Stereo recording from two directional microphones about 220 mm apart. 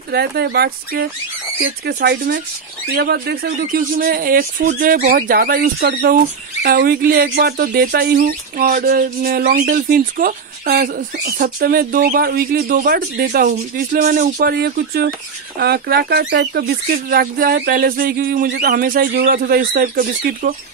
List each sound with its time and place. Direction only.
0.1 s speech: 45° right (ahead or behind)